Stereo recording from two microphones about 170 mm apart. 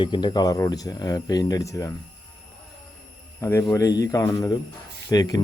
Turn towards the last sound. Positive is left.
turn(degrees=20)  # may be behind; listen again after turning